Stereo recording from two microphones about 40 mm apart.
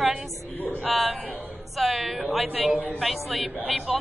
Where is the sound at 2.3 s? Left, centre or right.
Centre.